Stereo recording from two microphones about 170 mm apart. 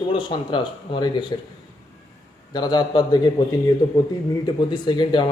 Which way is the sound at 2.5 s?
25° left (ahead or behind).